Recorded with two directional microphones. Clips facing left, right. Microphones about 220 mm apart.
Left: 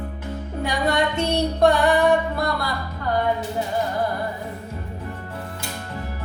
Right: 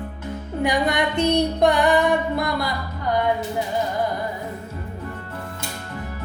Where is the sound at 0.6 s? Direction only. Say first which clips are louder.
Right 1 dB; 15° right (ahead or behind).